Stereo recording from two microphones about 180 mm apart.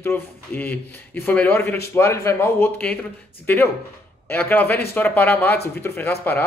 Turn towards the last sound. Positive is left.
turn(degrees=10)  # may be behind; listen again after turning